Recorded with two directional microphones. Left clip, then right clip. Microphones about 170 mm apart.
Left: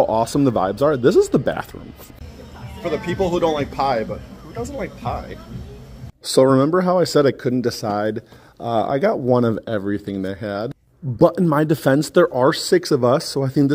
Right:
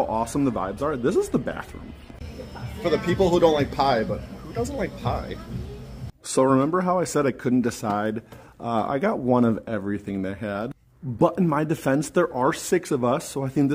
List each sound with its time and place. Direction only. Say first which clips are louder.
0.0 s speech: left 7 dB; 40° left (ahead or behind)
2.8 s speech: even; centre (ahead or behind)
6.3 s speech: left 6 dB; 20° left (ahead or behind)
7.4 s speech: left 3 dB; 10° left (ahead or behind); by 13.7 s 25° left (ahead or behind)